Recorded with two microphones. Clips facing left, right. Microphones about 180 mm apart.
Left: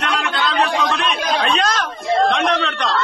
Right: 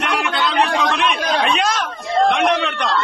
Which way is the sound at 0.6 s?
15° right (ahead or behind).